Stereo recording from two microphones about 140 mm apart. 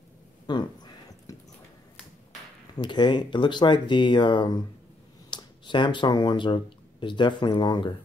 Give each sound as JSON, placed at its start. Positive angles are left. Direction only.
{"t": 0.5, "sound": "speech", "side_deg": 35}
{"t": 2.8, "sound": "speech", "side_deg": 30}